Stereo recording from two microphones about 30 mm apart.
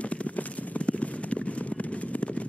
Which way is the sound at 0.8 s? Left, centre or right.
Left.